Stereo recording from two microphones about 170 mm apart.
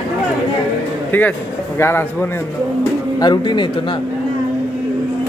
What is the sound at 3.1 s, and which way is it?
Speech, 25° left (ahead or behind).